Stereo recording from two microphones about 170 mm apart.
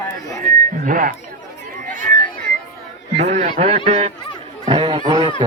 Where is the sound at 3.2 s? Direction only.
40° right (ahead or behind); by 5.3 s 25° right (ahead or behind).